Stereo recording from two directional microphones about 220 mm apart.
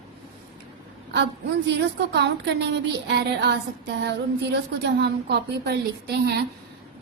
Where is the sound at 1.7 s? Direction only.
50° right (ahead or behind).